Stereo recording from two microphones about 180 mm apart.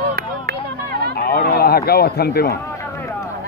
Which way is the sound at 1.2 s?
60° left (ahead or behind).